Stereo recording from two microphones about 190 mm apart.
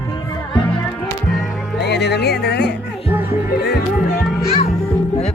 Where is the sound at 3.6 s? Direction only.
60° left (ahead or behind).